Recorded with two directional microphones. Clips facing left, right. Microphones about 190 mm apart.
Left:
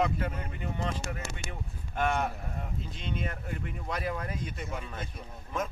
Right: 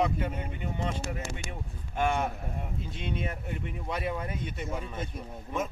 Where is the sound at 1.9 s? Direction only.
5° right (ahead or behind).